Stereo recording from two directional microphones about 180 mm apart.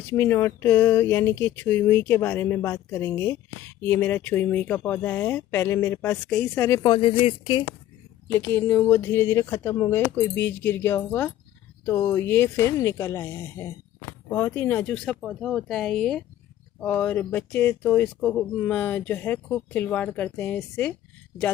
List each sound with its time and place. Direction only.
0.1 s speech: 15° left (ahead or behind)
7.0 s speech: 30° left (ahead or behind)
8.4 s speech: 10° left (ahead or behind)